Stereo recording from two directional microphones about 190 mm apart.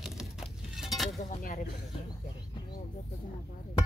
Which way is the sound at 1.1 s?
40° left (ahead or behind).